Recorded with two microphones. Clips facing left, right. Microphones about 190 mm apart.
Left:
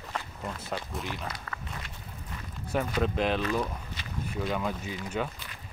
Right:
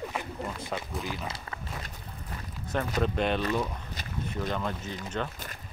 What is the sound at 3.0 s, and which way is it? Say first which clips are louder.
Speech: even; centre (ahead or behind).